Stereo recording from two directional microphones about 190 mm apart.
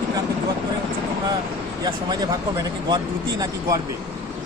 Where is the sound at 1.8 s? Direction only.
20° right (ahead or behind).